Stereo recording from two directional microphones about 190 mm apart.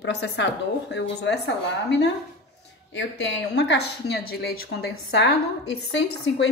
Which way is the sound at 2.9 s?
70° left (ahead or behind).